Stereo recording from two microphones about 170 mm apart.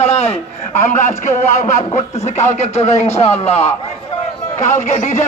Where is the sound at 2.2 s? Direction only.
40° left (ahead or behind).